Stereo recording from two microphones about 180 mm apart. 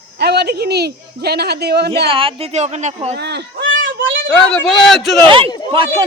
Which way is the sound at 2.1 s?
30° right (ahead or behind).